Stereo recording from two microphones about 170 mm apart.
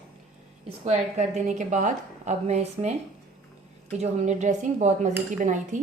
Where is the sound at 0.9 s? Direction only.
40° right (ahead or behind).